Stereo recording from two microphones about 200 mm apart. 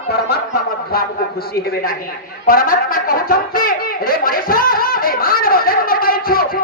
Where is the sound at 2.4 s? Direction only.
45° left (ahead or behind).